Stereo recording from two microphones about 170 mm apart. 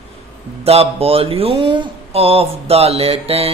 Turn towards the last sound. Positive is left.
turn(degrees=-35)  # may be behind; listen again after turning